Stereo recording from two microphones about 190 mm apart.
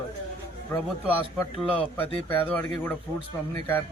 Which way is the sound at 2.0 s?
10° left (ahead or behind).